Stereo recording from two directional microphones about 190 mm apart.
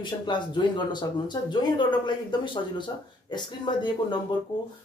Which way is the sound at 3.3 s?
25° left (ahead or behind).